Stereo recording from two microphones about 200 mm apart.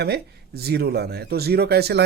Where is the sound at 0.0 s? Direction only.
55° right (ahead or behind).